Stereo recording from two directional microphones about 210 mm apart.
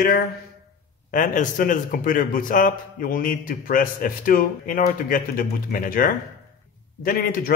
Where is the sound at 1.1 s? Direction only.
40° left (ahead or behind).